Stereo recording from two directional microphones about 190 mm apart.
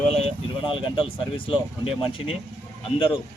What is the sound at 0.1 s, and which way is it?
Speech, 30° left (ahead or behind).